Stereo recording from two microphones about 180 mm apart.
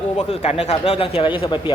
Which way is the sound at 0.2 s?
35° left (ahead or behind).